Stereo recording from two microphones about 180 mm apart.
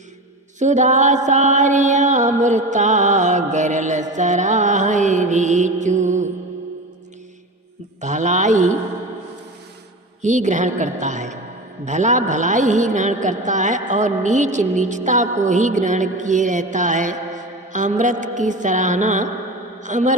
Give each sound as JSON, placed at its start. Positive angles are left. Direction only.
{"t": 0.6, "sound": "mantra", "side_deg": -40}
{"t": 8.0, "sound": "speech", "side_deg": -40}
{"t": 10.2, "sound": "a woman's voice", "side_deg": -40}